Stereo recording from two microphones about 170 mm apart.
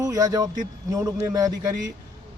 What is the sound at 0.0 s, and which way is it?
Speech, 20° right (ahead or behind).